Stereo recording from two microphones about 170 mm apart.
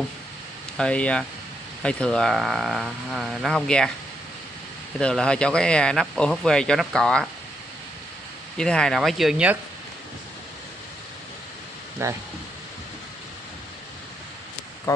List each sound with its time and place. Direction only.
0.7 s speech: 5° left (ahead or behind)
4.9 s speech: 5° left (ahead or behind)
8.5 s speech: 5° left (ahead or behind)
12.0 s speech: 15° right (ahead or behind)
14.9 s speech: 20° left (ahead or behind)